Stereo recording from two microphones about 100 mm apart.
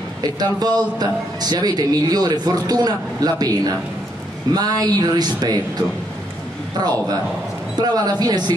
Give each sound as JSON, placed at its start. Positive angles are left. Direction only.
{"t": 0.2, "sound": "a man's voice", "side_deg": -40}
{"t": 7.8, "sound": "a man's voice", "side_deg": -40}